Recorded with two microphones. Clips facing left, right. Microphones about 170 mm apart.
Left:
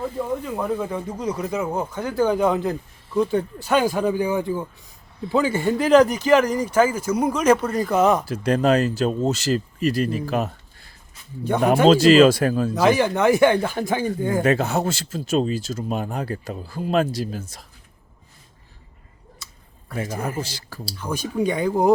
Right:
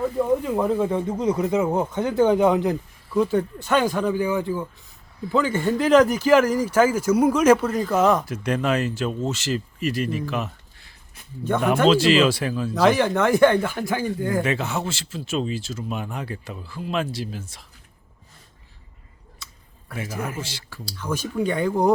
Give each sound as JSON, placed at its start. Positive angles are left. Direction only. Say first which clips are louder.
{"t": 0.6, "sound": "speech", "louder": "right 3 dB", "side_deg": -25}
{"t": 3.3, "sound": "speech", "louder": "left 1 dB", "side_deg": 10}
{"t": 8.3, "sound": "speech", "louder": "left 4 dB", "side_deg": 35}
{"t": 12.7, "sound": "speech", "louder": "right 3 dB", "side_deg": 10}
{"t": 13.7, "sound": "speech", "louder": "left 2 dB", "side_deg": 20}
{"t": 14.4, "sound": "speech", "louder": "left 5 dB", "side_deg": 40}
{"t": 20.1, "sound": "speech", "louder": "left 1 dB", "side_deg": 35}
{"t": 21.0, "sound": "speech", "louder": "left 1 dB", "side_deg": 15}